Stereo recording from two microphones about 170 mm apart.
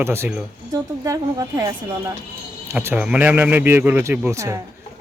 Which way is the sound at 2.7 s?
10° right (ahead or behind).